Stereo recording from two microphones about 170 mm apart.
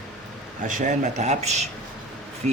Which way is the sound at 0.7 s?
50° right (ahead or behind).